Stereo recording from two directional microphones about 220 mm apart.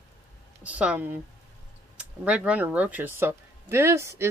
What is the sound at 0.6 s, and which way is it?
Speech, 5° right (ahead or behind).